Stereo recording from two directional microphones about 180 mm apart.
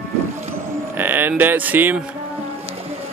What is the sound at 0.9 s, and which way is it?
Speech, 10° right (ahead or behind).